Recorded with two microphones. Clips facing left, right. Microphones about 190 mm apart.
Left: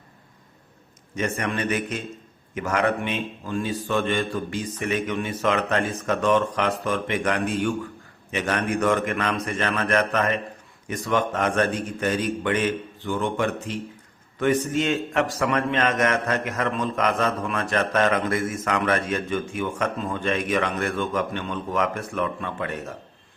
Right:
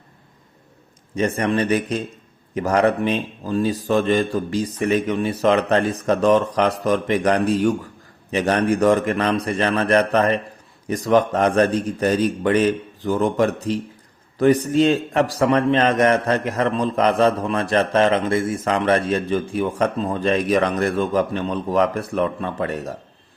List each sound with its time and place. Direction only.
1.1 s a man's voice: 35° right (ahead or behind)